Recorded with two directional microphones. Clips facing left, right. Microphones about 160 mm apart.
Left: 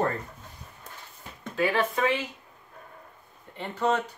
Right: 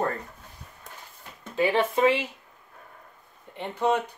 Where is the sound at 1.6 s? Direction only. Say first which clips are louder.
Right 3 dB; 25° right (ahead or behind).